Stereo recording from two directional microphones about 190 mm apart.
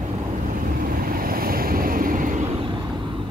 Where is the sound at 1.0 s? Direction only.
50° right (ahead or behind).